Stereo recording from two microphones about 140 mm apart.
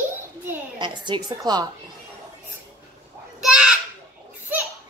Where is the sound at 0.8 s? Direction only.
35° right (ahead or behind).